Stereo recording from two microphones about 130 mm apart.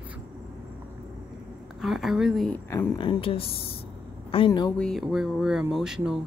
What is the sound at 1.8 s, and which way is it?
Speech, 5° right (ahead or behind).